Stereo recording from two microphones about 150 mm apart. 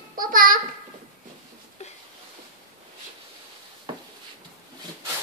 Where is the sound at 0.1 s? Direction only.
65° right (ahead or behind).